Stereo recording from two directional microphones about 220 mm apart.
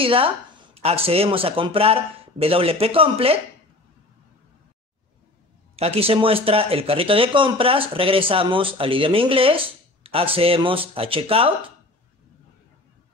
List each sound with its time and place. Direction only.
0.0 s speech: 25° right (ahead or behind)
5.8 s speech: 25° right (ahead or behind)